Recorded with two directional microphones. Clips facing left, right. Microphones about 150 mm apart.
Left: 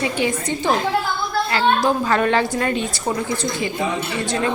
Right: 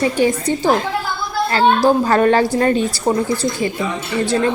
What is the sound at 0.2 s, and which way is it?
A woman's voice, 35° right (ahead or behind).